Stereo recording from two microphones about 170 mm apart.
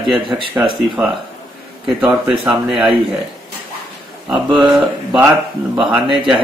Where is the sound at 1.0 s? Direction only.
10° right (ahead or behind).